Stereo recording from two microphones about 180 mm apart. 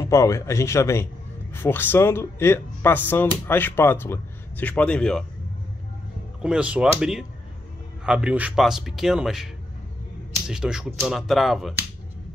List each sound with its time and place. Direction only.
0.0 s speech: 15° left (ahead or behind)
6.4 s a man's voice: 5° right (ahead or behind)
10.5 s a man's voice: 5° right (ahead or behind)